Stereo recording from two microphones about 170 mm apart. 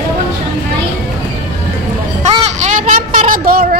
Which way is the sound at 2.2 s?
40° right (ahead or behind).